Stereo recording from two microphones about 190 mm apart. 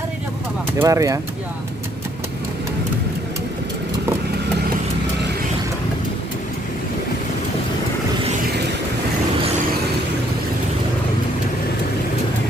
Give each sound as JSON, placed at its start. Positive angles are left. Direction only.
{"t": 0.7, "sound": "speech", "side_deg": -15}